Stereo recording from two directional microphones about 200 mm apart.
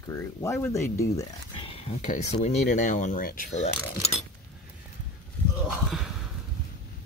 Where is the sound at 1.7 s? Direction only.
35° left (ahead or behind).